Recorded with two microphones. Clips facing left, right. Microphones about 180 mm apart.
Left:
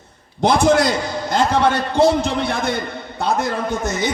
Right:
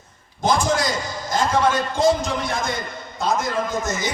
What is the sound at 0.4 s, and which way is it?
A man's voice, 65° left (ahead or behind).